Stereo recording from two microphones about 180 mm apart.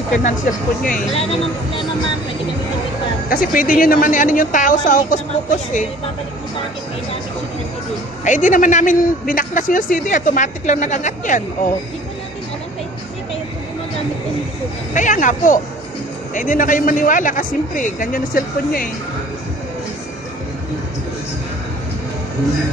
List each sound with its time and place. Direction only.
0.2 s a man's voice: 50° left (ahead or behind)
1.1 s speech: 35° left (ahead or behind)
3.3 s a man's voice: 50° left (ahead or behind)
8.2 s a man's voice: 45° left (ahead or behind)
15.0 s a man's voice: 45° left (ahead or behind)